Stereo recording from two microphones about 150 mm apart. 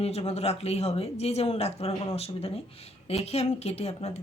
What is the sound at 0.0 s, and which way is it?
Speech, 45° left (ahead or behind).